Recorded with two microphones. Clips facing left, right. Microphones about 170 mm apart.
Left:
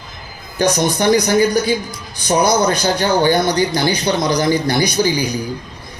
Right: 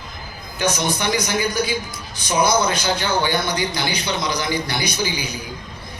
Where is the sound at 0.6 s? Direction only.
45° left (ahead or behind).